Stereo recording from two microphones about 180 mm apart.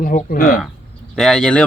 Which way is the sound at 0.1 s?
50° left (ahead or behind).